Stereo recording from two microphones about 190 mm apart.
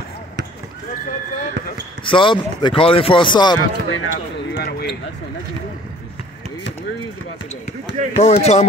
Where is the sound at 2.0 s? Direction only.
25° left (ahead or behind).